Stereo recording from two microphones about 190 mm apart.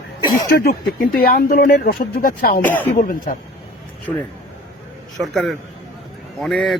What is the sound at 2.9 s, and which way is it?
Speech, 40° left (ahead or behind).